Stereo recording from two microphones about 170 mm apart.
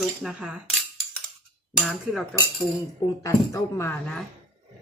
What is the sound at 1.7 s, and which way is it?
Speech, 5° right (ahead or behind).